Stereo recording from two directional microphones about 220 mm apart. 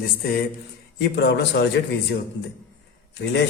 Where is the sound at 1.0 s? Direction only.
50° left (ahead or behind).